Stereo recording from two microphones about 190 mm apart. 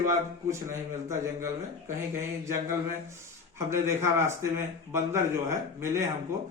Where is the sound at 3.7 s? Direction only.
15° right (ahead or behind).